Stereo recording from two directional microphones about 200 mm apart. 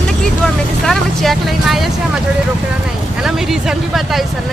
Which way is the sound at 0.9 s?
Centre (ahead or behind).